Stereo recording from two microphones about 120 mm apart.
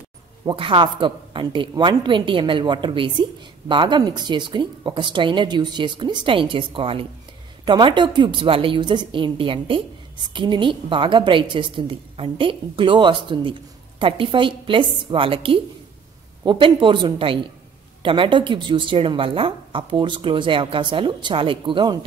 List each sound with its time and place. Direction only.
0.5 s a woman's voice: 45° right (ahead or behind)